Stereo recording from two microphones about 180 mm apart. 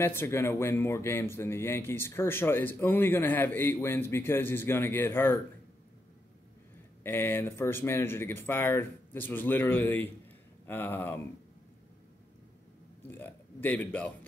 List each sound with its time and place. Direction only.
0.0 s speech: 15° left (ahead or behind)
7.0 s speech: 10° left (ahead or behind)
13.0 s speech: 10° left (ahead or behind)